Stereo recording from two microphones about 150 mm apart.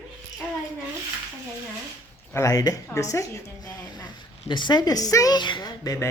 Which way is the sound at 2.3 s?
20° left (ahead or behind).